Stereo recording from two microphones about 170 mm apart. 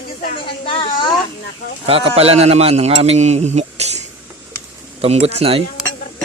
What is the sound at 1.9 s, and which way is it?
Speech, 35° right (ahead or behind).